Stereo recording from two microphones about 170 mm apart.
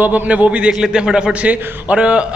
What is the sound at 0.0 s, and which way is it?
A man's voice, 10° right (ahead or behind).